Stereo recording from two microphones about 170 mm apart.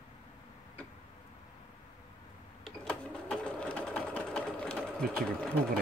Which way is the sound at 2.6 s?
5° left (ahead or behind).